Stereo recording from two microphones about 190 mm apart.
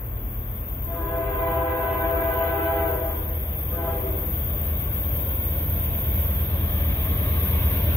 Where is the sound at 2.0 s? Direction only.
10° left (ahead or behind).